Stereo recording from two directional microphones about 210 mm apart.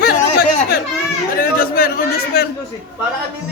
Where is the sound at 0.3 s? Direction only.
50° left (ahead or behind).